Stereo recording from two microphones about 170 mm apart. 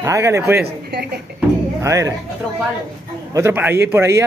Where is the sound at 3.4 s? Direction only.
15° right (ahead or behind).